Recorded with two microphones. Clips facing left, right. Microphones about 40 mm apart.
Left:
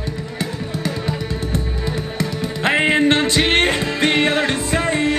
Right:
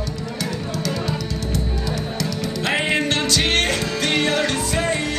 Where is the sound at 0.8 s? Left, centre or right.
Left.